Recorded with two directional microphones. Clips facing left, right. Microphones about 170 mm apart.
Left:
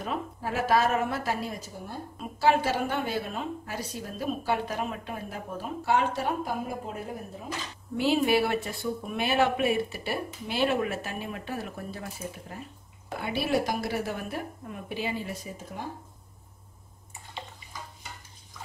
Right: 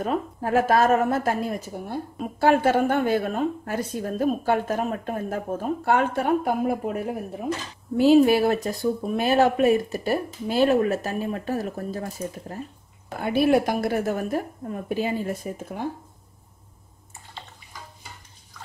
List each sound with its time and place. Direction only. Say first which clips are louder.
0.0 s a woman's voice: right 7 dB; 50° right (ahead or behind)
8.0 s a woman's voice: right 8 dB; 40° right (ahead or behind)